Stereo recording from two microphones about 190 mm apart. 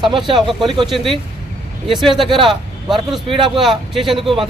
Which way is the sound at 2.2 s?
25° right (ahead or behind).